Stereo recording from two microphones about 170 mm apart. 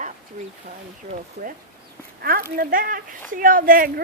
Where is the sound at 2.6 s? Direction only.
55° right (ahead or behind).